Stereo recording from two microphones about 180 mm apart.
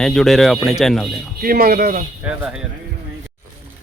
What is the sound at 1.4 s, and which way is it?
Speech, 55° right (ahead or behind).